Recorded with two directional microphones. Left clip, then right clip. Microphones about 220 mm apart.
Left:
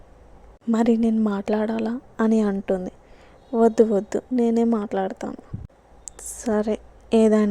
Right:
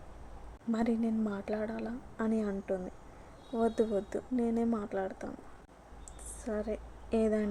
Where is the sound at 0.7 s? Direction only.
40° left (ahead or behind).